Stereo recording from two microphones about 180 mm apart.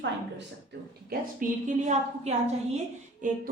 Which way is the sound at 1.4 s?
40° right (ahead or behind).